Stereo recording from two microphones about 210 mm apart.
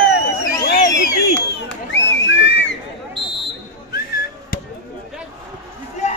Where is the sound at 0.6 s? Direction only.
50° left (ahead or behind).